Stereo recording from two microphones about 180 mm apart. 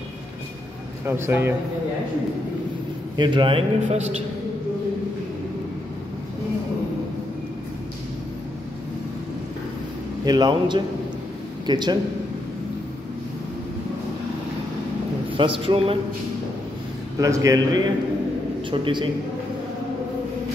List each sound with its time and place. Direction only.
1.0 s a man's voice: 15° right (ahead or behind)
3.2 s a man's voice: 25° right (ahead or behind)
10.2 s a man's voice: 25° right (ahead or behind)
15.3 s a man's voice: 30° right (ahead or behind)
17.2 s a man's voice: 20° right (ahead or behind)